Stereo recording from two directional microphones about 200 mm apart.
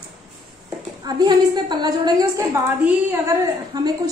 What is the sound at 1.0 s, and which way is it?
A woman's voice, 20° right (ahead or behind).